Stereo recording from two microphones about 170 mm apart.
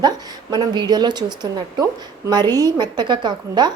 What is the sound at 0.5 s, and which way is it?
A woman's voice, 25° right (ahead or behind).